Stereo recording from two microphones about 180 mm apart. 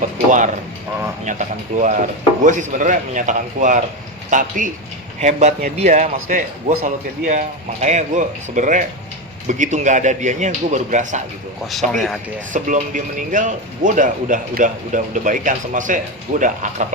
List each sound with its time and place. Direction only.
0.3 s speech: 45° right (ahead or behind)
11.7 s speech: centre (ahead or behind)
12.5 s speech: 45° right (ahead or behind)